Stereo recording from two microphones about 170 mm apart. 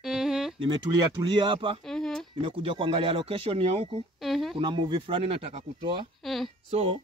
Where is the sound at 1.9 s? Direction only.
5° left (ahead or behind).